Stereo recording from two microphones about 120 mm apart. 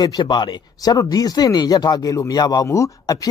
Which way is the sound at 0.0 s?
35° left (ahead or behind).